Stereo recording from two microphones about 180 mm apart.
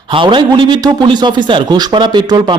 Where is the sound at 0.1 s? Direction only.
25° right (ahead or behind).